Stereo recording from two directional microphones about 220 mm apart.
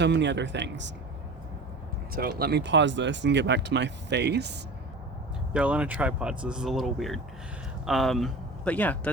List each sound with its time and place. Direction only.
0.0 s speech: 50° right (ahead or behind)
2.4 s speech: 50° right (ahead or behind)
5.5 s speech: 5° right (ahead or behind)